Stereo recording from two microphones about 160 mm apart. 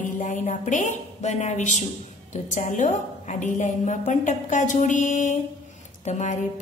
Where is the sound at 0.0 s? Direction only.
55° left (ahead or behind).